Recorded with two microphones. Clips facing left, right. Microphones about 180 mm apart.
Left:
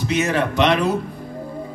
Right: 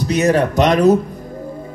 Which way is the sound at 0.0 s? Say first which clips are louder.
Right 5 dB; 40° right (ahead or behind).